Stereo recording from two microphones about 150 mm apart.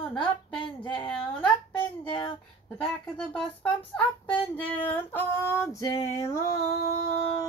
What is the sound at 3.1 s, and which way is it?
Female singing, 10° left (ahead or behind).